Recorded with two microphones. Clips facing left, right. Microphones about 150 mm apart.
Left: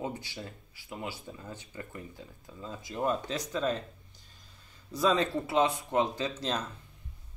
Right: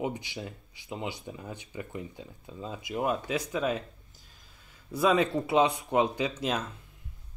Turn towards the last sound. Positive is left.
turn(degrees=-10)  # may be behind; listen again after turning